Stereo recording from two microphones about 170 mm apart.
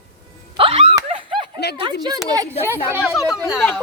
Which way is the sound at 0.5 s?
35° right (ahead or behind).